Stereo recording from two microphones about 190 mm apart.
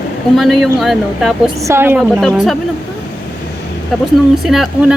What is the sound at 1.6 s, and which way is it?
Speech, 15° right (ahead or behind).